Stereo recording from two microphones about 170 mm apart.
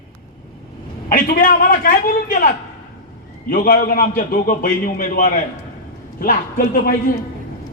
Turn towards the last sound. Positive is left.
turn(degrees=60)  # may be behind; listen again after turning